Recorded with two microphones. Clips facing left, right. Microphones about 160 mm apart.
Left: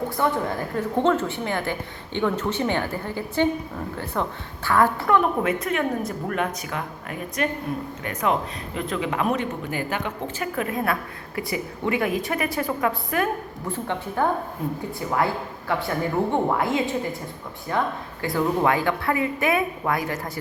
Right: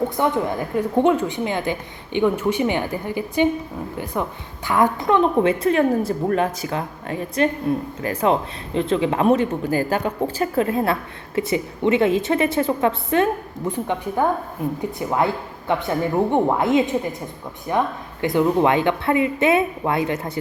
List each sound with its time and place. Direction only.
0.2 s a woman's voice: 15° right (ahead or behind)